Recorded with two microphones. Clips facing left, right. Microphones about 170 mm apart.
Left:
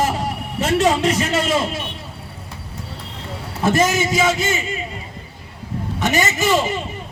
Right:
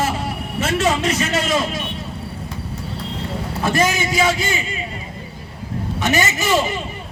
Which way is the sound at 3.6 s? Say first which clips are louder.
Left 2 dB; 20° left (ahead or behind).